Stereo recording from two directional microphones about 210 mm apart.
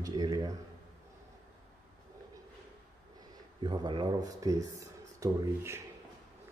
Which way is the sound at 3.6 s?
20° right (ahead or behind).